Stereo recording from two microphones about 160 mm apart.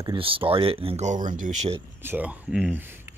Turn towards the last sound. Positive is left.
turn(degrees=-15)  # may be behind; listen again after turning